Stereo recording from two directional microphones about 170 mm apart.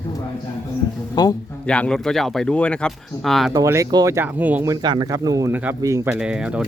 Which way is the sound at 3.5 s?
20° right (ahead or behind).